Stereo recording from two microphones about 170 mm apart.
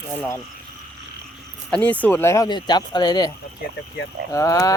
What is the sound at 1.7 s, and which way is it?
Speech, 10° left (ahead or behind).